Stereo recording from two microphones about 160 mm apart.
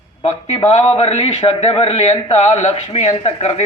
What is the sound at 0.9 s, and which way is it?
Speech, 40° left (ahead or behind).